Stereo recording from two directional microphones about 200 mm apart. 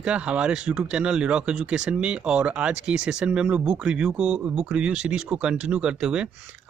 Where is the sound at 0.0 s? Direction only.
5° right (ahead or behind).